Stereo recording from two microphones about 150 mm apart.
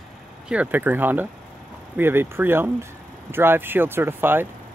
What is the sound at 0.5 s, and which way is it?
Speech, 10° right (ahead or behind).